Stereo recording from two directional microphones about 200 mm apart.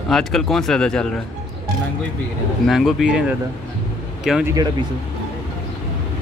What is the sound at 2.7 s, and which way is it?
Speech, centre (ahead or behind).